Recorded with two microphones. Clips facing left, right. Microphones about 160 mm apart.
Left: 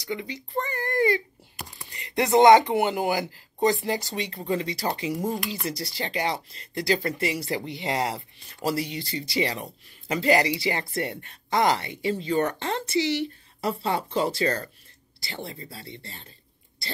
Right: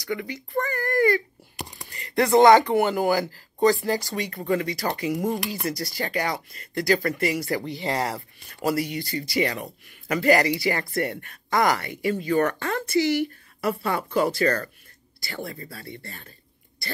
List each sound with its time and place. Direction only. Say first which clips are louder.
0.0 s speech: right 2 dB; 20° left (ahead or behind)
5.1 s speech: right 2 dB; 50° right (ahead or behind)
5.7 s speech: right 3 dB; 25° left (ahead or behind)